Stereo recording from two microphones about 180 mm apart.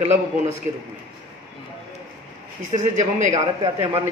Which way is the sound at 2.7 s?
40° right (ahead or behind).